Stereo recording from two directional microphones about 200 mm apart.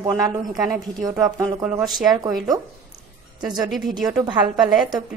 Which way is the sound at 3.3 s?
20° right (ahead or behind).